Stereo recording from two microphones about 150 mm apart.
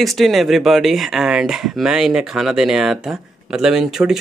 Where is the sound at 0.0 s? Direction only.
Centre (ahead or behind).